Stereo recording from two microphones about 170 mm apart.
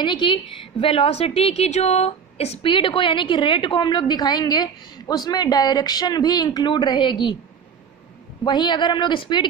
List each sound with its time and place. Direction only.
0.0 s a woman's voice: 30° left (ahead or behind)
8.5 s a woman's voice: 25° left (ahead or behind)